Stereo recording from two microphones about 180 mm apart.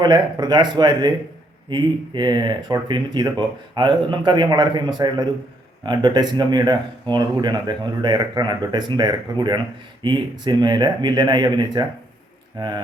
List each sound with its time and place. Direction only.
0.0 s speech: 25° right (ahead or behind)